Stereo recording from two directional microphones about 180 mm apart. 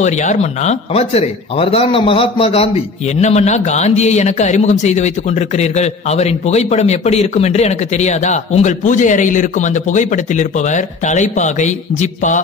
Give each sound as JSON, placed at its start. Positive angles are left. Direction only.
{"t": 0.0, "sound": "speech", "side_deg": 40}